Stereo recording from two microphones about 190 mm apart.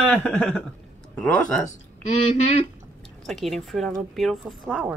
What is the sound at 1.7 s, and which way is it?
Speech, 35° left (ahead or behind).